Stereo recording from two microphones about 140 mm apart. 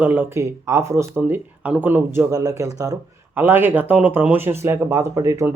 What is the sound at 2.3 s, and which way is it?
Speech, 25° right (ahead or behind).